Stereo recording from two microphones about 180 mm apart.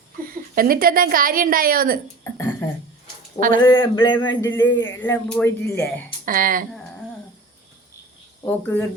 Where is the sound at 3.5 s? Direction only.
90° left.